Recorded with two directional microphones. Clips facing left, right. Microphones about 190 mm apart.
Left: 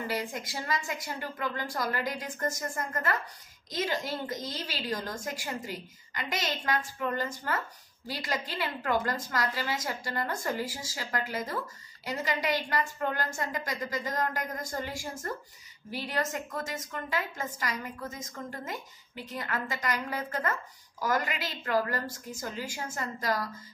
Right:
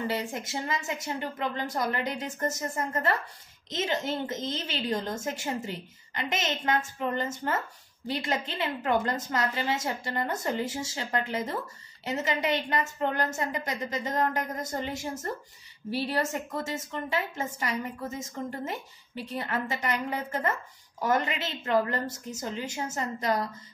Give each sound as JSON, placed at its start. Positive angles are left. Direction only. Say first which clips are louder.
{"t": 0.0, "sound": "a woman's voice", "louder": "right 2 dB", "side_deg": -25}